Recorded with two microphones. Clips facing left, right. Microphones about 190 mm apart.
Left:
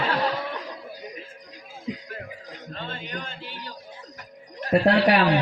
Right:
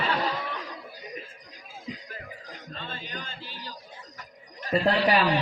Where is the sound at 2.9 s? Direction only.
60° left (ahead or behind).